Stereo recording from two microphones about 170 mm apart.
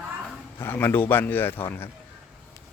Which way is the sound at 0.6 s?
15° left (ahead or behind).